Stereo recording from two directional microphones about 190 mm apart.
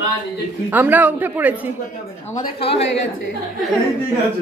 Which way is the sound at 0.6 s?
10° right (ahead or behind).